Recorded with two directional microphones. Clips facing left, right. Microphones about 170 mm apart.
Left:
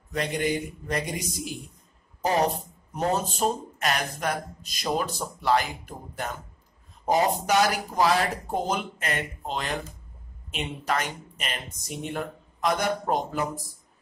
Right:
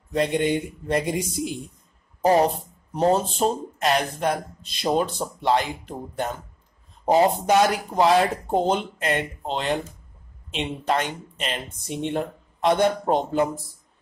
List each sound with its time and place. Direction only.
0.1 s speech: 30° right (ahead or behind)
2.9 s speech: 30° right (ahead or behind)